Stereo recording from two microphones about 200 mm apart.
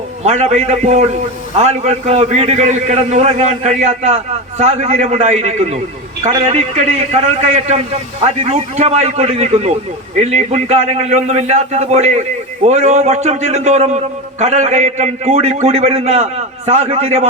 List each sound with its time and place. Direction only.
0.2 s a man's voice: 35° right (ahead or behind)